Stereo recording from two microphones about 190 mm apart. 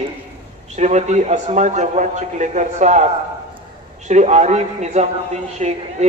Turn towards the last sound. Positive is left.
turn(degrees=-35)  # may be behind; listen again after turning